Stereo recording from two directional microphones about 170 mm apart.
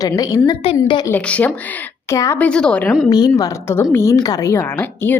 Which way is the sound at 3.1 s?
25° left (ahead or behind).